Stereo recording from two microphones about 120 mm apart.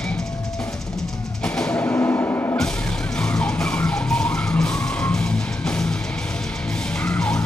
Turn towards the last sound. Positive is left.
turn(degrees=10)  # may be behind; listen again after turning